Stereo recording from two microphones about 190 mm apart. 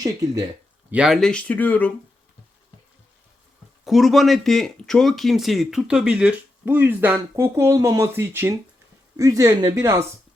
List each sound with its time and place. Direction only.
0.9 s speech: 5° right (ahead or behind)
3.8 s speech: centre (ahead or behind); by 10.0 s 15° right (ahead or behind)